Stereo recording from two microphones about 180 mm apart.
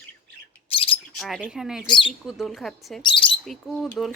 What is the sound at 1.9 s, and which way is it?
Speech, 25° left (ahead or behind).